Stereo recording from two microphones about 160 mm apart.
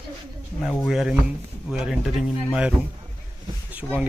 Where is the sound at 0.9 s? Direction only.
5° right (ahead or behind).